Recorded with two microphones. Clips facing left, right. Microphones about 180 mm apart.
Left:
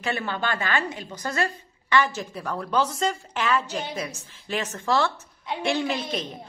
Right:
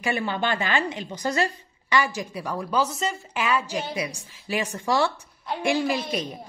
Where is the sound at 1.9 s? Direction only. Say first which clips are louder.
Left 1 dB; 10° right (ahead or behind).